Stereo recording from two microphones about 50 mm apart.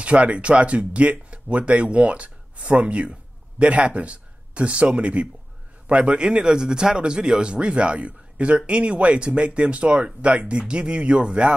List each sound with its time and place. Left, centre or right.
0.0 s speech: right